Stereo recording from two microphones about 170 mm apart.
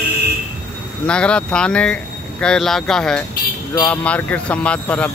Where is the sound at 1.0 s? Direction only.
5° left (ahead or behind).